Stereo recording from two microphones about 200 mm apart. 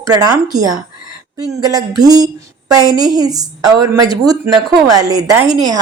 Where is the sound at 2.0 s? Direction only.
20° right (ahead or behind).